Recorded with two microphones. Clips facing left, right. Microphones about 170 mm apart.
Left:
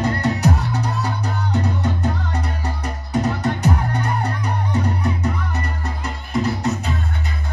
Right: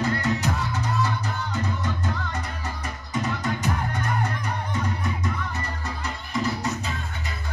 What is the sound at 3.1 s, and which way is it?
Music, 65° left (ahead or behind).